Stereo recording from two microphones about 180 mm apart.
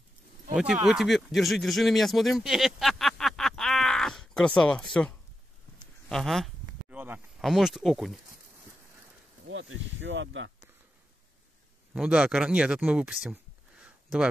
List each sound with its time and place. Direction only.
0.8 s speech: centre (ahead or behind)
9.5 s speech: 90° right
11.9 s speech: 5° right (ahead or behind)